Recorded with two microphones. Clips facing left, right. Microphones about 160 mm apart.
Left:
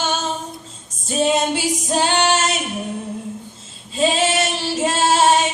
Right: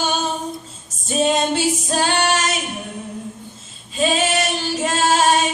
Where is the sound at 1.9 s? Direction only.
20° left (ahead or behind).